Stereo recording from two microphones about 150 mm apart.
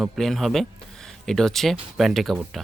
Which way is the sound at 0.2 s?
Centre (ahead or behind).